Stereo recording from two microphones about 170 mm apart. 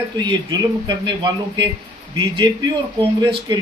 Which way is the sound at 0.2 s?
25° right (ahead or behind).